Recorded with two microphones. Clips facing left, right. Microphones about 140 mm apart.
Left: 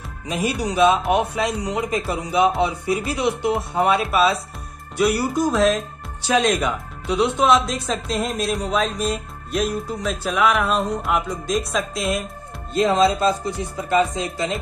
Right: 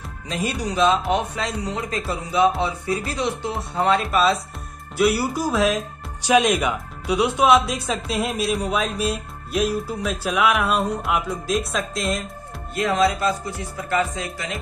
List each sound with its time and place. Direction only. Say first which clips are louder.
0.3 s speech: left 3 dB; 10° left (ahead or behind)
4.0 s speech: left 1 dB; centre (ahead or behind)
12.7 s speech: left 3 dB; 25° left (ahead or behind)